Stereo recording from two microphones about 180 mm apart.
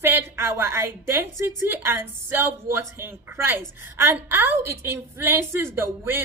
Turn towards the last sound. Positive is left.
turn(degrees=-15)  # may be behind; listen again after turning